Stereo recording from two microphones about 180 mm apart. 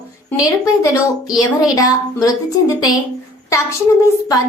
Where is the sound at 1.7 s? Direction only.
20° left (ahead or behind).